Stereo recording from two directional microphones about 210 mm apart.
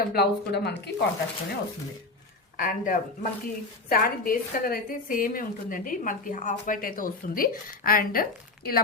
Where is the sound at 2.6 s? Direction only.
40° left (ahead or behind).